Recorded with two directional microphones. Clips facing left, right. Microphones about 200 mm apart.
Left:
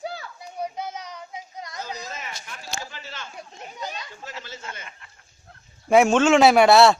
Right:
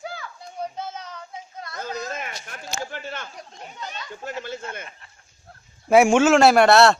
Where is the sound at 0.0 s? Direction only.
35° left (ahead or behind).